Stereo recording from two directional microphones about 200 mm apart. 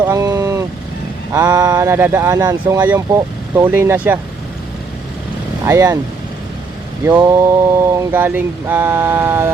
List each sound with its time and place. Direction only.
0.0 s vehicle: 15° right (ahead or behind)
1.3 s speech: 15° right (ahead or behind)
5.6 s speech: 15° right (ahead or behind)
7.2 s speech: 15° right (ahead or behind)